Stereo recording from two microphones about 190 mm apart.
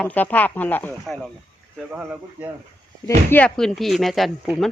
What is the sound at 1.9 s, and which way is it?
Speech, 5° right (ahead or behind).